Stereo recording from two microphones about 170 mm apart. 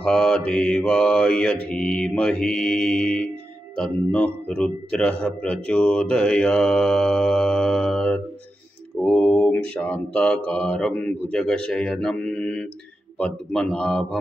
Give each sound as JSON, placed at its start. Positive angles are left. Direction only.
{"t": 0.0, "sound": "mantra", "side_deg": 5}
{"t": 0.5, "sound": "a man's voice", "side_deg": 5}